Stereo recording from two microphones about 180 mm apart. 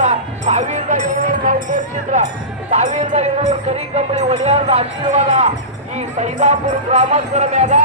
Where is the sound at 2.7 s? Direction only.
40° right (ahead or behind).